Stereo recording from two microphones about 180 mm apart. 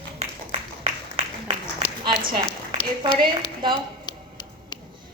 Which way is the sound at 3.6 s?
25° right (ahead or behind).